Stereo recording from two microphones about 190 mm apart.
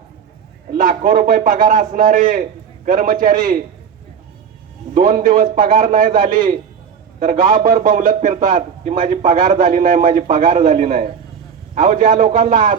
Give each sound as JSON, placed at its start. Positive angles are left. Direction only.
{"t": 0.7, "sound": "a man's voice", "side_deg": -45}
{"t": 4.9, "sound": "a man's voice", "side_deg": -45}